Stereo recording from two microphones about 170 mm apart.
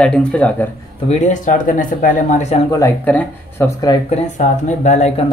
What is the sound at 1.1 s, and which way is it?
Speech, 45° left (ahead or behind).